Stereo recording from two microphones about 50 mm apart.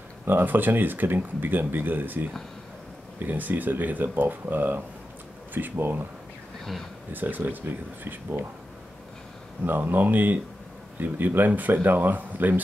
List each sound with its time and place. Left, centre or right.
0.2 s speech: right
7.1 s speech: right
9.7 s speech: right